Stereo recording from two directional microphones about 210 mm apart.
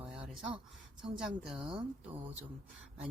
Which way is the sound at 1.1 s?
Centre (ahead or behind).